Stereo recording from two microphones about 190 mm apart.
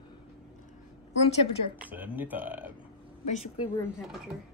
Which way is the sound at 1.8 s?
10° right (ahead or behind).